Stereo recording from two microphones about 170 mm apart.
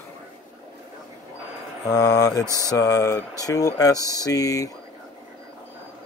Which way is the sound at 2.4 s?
15° right (ahead or behind).